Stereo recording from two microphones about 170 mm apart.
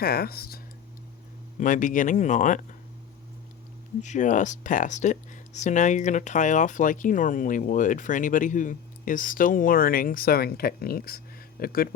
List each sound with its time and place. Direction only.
0.0 s speech: 65° left (ahead or behind)
1.5 s speech: 50° left (ahead or behind)
4.0 s speech: 45° left (ahead or behind)